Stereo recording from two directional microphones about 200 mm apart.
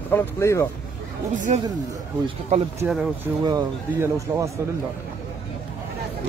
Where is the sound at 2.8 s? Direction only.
5° right (ahead or behind).